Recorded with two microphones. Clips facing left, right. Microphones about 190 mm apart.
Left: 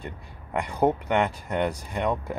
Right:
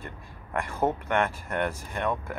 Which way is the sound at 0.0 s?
15° left (ahead or behind).